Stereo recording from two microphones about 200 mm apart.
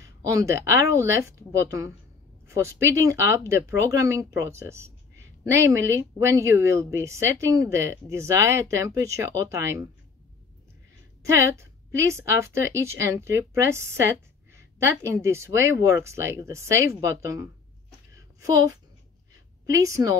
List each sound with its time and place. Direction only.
0.0 s speech: 15° right (ahead or behind)
11.2 s speech: 15° right (ahead or behind)
18.1 s a sound: 15° right (ahead or behind)
19.6 s speech: 15° right (ahead or behind)